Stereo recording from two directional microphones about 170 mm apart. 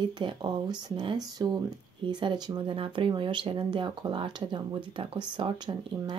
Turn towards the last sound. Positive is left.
turn(degrees=-25)  # may be behind; listen again after turning